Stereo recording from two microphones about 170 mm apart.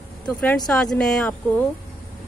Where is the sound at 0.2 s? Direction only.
5° left (ahead or behind).